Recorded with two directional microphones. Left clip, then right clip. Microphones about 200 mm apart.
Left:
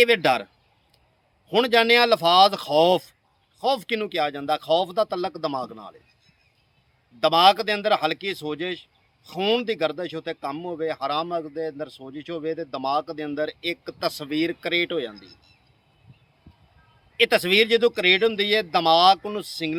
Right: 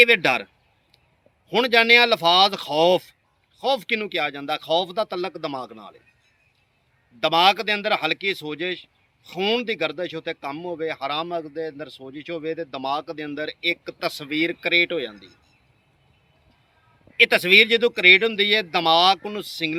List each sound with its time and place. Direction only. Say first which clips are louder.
0.0 s a man's voice: right 2 dB; 15° left (ahead or behind)
1.5 s a man's voice: right 2 dB; 20° left (ahead or behind)
7.2 s a man's voice: left 1 dB; 20° left (ahead or behind)
17.2 s a man's voice: right 4 dB; 15° left (ahead or behind)